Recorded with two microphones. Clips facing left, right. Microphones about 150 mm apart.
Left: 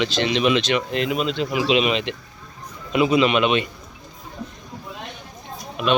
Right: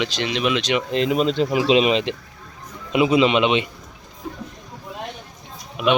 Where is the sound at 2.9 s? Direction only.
15° right (ahead or behind).